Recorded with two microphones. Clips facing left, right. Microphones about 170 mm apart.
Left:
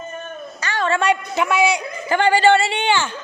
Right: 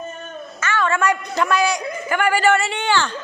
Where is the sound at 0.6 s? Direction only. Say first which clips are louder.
Even; 35° left (ahead or behind).